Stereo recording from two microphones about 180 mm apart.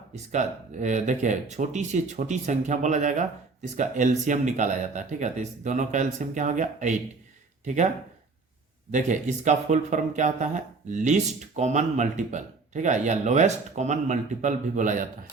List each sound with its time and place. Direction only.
0.3 s speech: 40° right (ahead or behind)
8.9 s speech: 40° right (ahead or behind)